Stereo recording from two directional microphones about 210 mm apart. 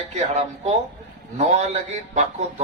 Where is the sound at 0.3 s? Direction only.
35° right (ahead or behind).